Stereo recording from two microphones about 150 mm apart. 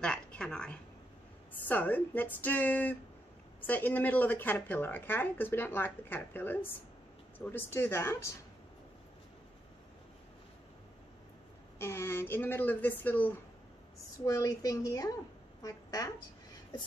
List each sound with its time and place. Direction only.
0.0 s a woman's voice: 5° left (ahead or behind)
11.8 s speech: 15° left (ahead or behind)
14.2 s a woman's voice: 25° left (ahead or behind)